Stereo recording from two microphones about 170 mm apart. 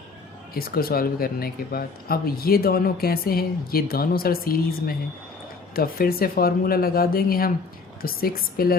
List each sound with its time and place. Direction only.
0.5 s speech: 60° left (ahead or behind)